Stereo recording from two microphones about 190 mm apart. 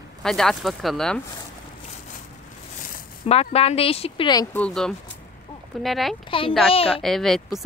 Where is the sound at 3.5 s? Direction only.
30° left (ahead or behind).